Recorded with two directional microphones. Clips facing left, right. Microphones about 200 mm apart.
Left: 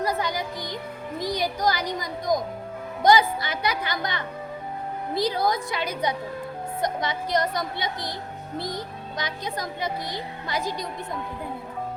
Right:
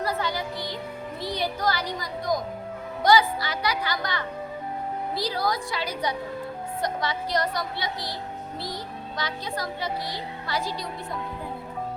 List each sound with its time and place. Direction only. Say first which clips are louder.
0.0 s music: left 1 dB; 15° left (ahead or behind)
1.2 s a woman's voice: left 2 dB; 15° left (ahead or behind)
8.5 s speech: left 5 dB; 50° left (ahead or behind)
9.1 s a woman's voice: left 1 dB; 20° left (ahead or behind)